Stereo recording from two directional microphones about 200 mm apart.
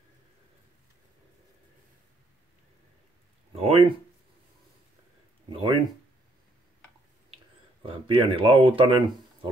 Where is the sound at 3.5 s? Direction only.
30° right (ahead or behind).